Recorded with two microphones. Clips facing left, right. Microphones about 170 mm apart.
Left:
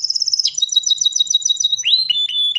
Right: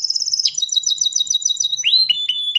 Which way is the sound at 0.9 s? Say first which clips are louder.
Left 3 dB; 10° right (ahead or behind).